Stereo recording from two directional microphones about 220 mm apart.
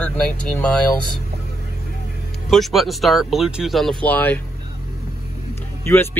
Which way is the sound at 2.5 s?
Centre (ahead or behind).